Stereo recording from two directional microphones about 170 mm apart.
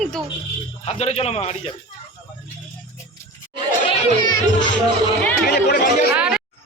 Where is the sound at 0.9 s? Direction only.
40° left (ahead or behind).